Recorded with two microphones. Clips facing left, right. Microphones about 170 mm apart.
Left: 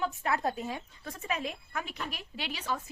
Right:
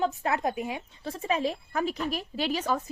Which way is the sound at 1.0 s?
30° right (ahead or behind).